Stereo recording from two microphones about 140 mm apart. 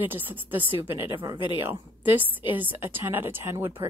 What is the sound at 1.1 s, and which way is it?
Speech, 30° right (ahead or behind).